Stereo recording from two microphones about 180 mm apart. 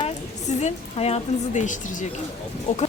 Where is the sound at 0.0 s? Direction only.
35° left (ahead or behind).